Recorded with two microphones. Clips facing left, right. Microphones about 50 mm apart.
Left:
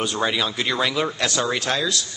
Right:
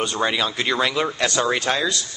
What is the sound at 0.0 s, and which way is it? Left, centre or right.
Speech, centre.